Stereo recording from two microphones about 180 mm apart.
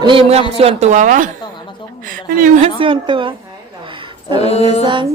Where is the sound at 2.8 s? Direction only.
30° right (ahead or behind).